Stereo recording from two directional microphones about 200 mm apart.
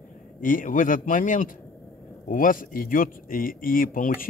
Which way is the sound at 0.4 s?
45° left (ahead or behind).